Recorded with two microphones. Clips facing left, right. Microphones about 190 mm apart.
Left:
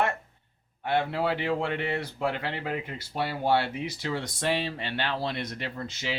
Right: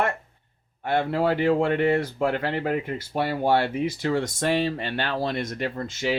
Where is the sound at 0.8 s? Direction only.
45° right (ahead or behind).